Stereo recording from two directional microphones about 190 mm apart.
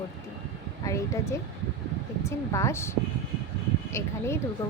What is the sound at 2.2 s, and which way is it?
Speech, 15° left (ahead or behind).